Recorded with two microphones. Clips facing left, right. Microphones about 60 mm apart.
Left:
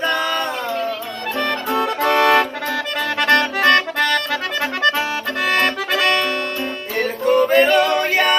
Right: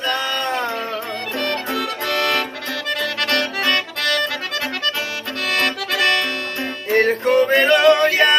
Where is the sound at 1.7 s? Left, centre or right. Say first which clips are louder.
Left 5 dB; left.